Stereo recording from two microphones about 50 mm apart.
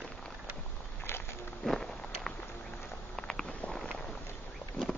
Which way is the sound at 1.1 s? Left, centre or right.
Left.